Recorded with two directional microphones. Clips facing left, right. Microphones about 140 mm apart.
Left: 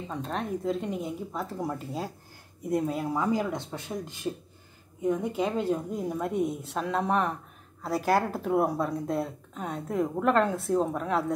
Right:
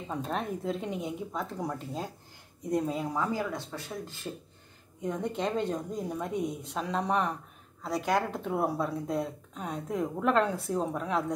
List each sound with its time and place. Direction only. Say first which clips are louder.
0.1 s a woman's voice: even; centre (ahead or behind); by 4.3 s 15° left (ahead or behind)
5.0 s a woman's voice: left 4 dB; 5° left (ahead or behind)